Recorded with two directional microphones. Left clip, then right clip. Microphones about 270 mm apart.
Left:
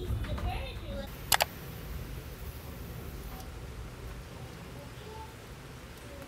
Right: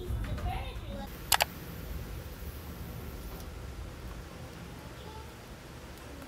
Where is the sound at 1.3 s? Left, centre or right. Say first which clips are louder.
Even; centre.